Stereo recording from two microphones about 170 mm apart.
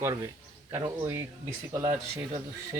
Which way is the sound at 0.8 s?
15° right (ahead or behind).